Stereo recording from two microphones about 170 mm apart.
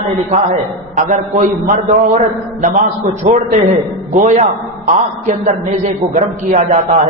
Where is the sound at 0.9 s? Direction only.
50° right (ahead or behind).